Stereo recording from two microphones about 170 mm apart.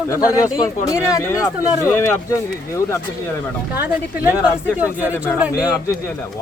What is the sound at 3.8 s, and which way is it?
Speech, 10° right (ahead or behind).